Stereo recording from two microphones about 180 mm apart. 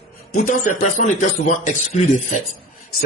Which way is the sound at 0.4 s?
55° left (ahead or behind).